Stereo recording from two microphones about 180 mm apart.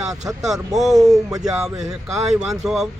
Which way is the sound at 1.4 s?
5° right (ahead or behind).